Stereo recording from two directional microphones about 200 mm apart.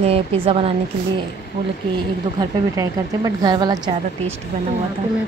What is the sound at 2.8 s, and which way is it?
Speech, 20° right (ahead or behind).